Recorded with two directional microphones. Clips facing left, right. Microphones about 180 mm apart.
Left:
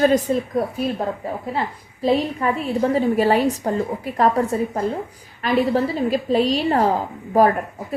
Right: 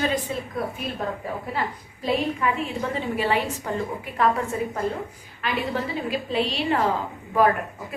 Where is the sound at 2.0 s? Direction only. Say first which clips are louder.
Left 5 dB; 35° left (ahead or behind).